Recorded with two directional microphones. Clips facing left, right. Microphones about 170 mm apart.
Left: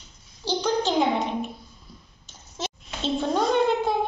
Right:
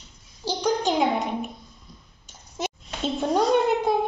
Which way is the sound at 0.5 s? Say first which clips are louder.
Even; 10° right (ahead or behind).